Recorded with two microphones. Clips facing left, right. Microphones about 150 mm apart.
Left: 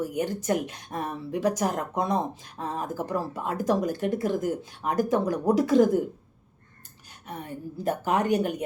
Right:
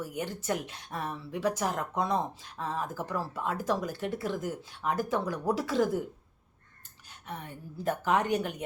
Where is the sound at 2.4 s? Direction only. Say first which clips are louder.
Left 2 dB; 45° left (ahead or behind).